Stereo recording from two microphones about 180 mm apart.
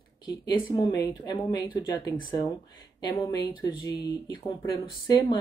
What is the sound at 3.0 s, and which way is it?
Speech, 25° left (ahead or behind).